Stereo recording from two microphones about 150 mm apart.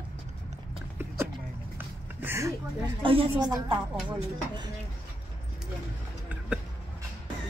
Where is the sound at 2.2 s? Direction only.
15° right (ahead or behind).